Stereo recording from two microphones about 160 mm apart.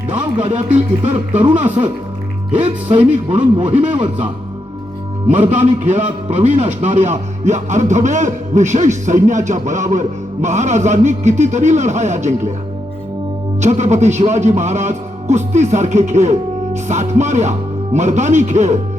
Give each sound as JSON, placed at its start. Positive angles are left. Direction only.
{"t": 0.1, "sound": "speech", "side_deg": -35}
{"t": 5.5, "sound": "speech", "side_deg": -40}
{"t": 13.6, "sound": "speech", "side_deg": -45}